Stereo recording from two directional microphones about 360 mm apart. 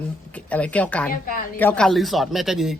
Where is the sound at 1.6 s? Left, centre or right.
Centre.